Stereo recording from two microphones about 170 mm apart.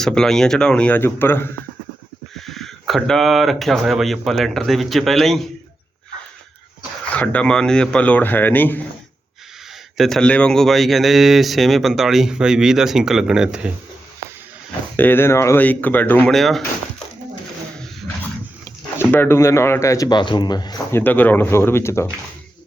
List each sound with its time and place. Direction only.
0.0 s speech: 5° left (ahead or behind)
2.5 s speech: centre (ahead or behind)
7.2 s speech: 5° left (ahead or behind)
10.0 s speech: 5° left (ahead or behind)
14.9 s speech: 10° left (ahead or behind)
19.1 s speech: 15° left (ahead or behind)
21.0 s speech: 10° left (ahead or behind)